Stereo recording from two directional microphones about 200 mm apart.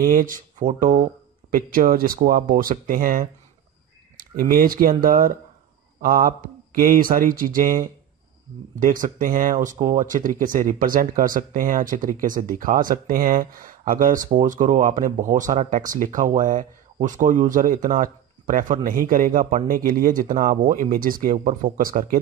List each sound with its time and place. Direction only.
0.0 s speech: 45° right (ahead or behind)